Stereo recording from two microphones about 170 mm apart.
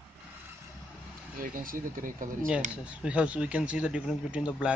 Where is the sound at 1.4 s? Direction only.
55° right (ahead or behind).